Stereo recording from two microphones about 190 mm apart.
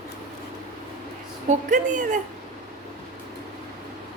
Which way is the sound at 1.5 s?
40° right (ahead or behind).